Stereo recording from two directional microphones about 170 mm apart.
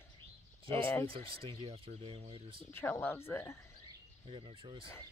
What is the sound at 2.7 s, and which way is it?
Speech, 10° left (ahead or behind).